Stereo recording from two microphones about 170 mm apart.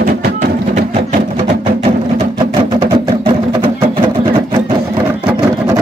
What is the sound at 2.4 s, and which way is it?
Music, 30° right (ahead or behind).